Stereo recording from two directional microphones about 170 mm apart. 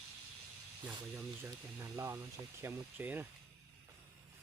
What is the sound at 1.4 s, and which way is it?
Speech, 15° right (ahead or behind).